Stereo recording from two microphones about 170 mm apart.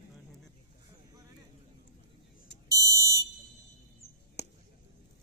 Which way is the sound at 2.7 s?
20° right (ahead or behind).